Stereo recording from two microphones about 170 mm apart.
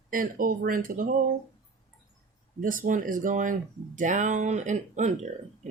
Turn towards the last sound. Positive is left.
turn(degrees=-45)  # may be behind; listen again after turning